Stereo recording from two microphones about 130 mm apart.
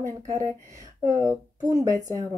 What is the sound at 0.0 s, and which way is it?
Speech, 20° left (ahead or behind).